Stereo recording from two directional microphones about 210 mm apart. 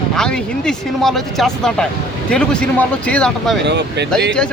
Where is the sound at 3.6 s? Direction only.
55° right (ahead or behind).